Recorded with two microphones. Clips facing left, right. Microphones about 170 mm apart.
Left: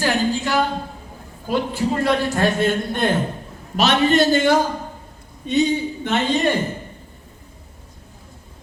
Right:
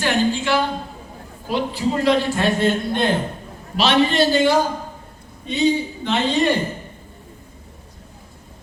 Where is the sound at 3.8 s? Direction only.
50° left (ahead or behind).